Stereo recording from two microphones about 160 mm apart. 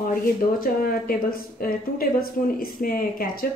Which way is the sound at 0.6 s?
65° left (ahead or behind).